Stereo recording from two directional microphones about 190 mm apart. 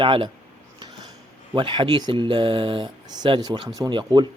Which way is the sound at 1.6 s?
25° right (ahead or behind).